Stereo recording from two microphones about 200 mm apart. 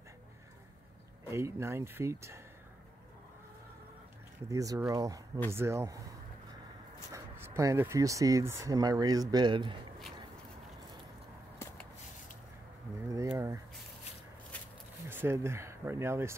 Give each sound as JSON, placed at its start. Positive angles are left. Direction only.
{"t": 1.3, "sound": "speech", "side_deg": -15}
{"t": 4.5, "sound": "speech", "side_deg": -15}
{"t": 7.1, "sound": "speech", "side_deg": -15}
{"t": 11.5, "sound": "a sound", "side_deg": 15}
{"t": 13.3, "sound": "speech", "side_deg": -15}
{"t": 15.0, "sound": "speech", "side_deg": -10}